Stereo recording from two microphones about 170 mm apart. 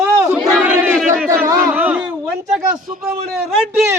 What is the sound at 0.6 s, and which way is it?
Battle cry, 5° right (ahead or behind).